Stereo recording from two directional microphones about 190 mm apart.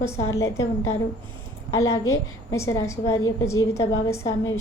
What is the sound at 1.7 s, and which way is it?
A woman's voice, 15° left (ahead or behind).